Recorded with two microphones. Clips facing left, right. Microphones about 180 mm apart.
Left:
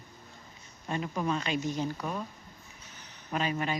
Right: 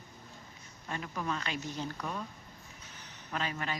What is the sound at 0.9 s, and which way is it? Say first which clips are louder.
Speech: left 5 dB; 20° left (ahead or behind).